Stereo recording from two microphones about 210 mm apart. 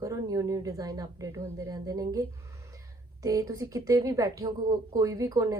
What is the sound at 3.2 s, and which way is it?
A woman's voice, 15° right (ahead or behind).